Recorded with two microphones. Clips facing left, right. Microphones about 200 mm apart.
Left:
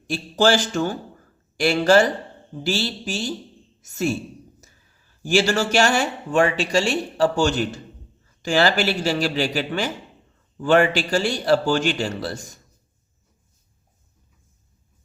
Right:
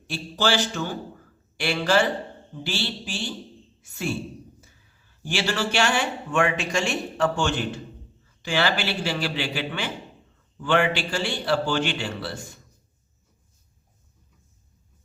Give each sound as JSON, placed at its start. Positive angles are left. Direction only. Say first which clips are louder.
{"t": 0.1, "sound": "a man's voice", "louder": "left 6 dB", "side_deg": 45}
{"t": 5.3, "sound": "speech", "louder": "left 7 dB", "side_deg": 45}